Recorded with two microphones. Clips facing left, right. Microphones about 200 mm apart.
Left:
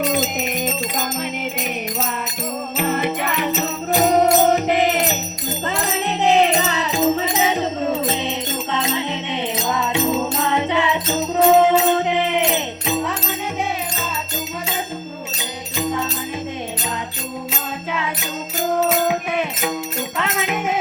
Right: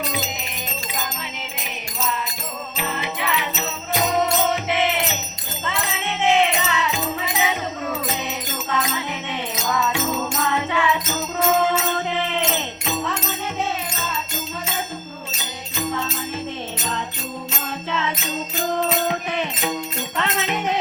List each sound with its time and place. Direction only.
2.7 s music: 50° left (ahead or behind); by 13.3 s 15° left (ahead or behind)
17.9 s music: 10° left (ahead or behind)